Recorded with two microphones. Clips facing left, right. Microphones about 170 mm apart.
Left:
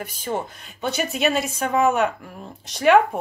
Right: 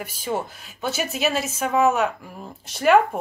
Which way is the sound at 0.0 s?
5° right (ahead or behind).